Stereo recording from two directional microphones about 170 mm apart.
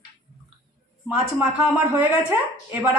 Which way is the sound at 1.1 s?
10° right (ahead or behind).